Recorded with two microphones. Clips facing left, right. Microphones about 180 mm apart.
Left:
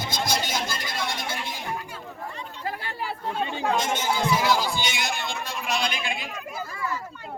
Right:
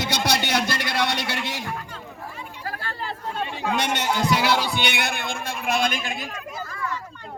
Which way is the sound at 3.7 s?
70° right (ahead or behind).